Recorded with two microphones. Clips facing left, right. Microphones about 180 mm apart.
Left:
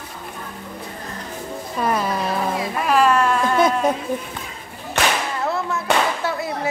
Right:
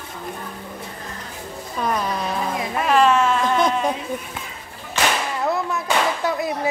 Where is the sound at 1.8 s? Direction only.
5° left (ahead or behind).